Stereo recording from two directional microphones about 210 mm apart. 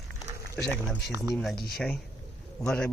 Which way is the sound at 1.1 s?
15° right (ahead or behind).